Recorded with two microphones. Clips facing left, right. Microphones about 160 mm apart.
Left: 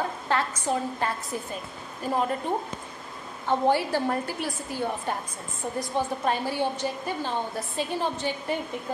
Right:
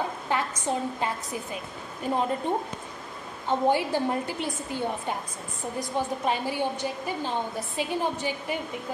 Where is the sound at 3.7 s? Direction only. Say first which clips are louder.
Even; 15° right (ahead or behind).